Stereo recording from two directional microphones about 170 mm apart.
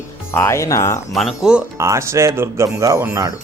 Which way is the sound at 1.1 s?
5° right (ahead or behind).